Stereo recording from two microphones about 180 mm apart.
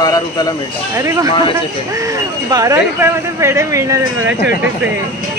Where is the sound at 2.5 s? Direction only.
20° right (ahead or behind).